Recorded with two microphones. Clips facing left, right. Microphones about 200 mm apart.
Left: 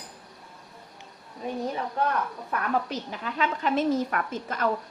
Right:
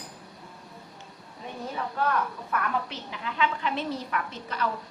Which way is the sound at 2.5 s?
40° left (ahead or behind).